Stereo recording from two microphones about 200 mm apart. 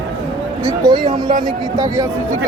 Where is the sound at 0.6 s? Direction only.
20° right (ahead or behind).